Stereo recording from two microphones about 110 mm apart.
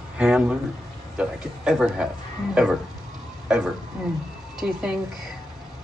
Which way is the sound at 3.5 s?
5° right (ahead or behind).